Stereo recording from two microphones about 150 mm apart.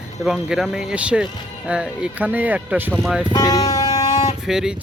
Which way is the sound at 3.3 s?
25° left (ahead or behind).